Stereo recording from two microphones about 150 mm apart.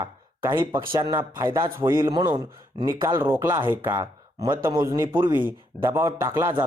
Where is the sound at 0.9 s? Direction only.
25° right (ahead or behind).